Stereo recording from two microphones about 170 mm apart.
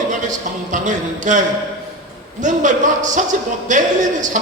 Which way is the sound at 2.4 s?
45° right (ahead or behind).